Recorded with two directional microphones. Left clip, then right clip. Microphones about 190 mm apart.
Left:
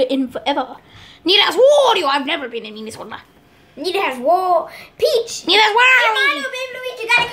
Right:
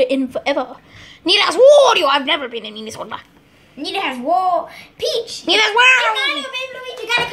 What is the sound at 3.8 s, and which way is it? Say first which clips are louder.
A child's voice: left 3 dB; 30° left (ahead or behind).